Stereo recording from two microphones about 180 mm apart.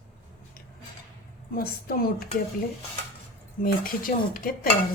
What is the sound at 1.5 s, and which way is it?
Speech, 55° left (ahead or behind).